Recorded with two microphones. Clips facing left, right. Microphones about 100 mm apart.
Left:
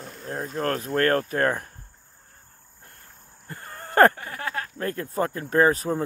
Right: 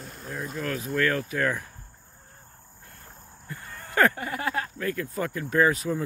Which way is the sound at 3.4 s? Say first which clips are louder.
Left 2 dB; 45° left (ahead or behind).